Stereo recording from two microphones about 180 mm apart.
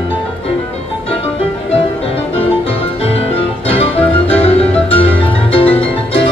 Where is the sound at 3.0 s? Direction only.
35° left (ahead or behind).